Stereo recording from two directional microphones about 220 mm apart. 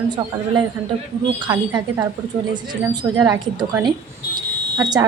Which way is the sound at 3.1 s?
15° right (ahead or behind).